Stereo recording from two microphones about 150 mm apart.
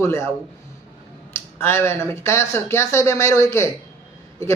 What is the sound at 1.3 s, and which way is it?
A man's voice, 15° left (ahead or behind).